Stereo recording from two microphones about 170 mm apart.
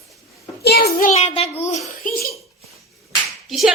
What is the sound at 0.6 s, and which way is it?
Child singing, 65° left (ahead or behind).